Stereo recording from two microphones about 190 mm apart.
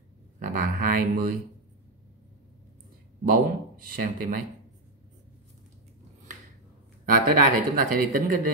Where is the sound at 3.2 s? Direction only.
50° right (ahead or behind).